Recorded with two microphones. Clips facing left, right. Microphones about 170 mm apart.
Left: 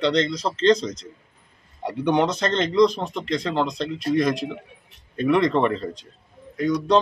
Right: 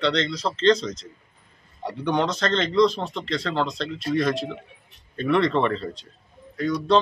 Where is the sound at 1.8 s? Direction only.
15° left (ahead or behind).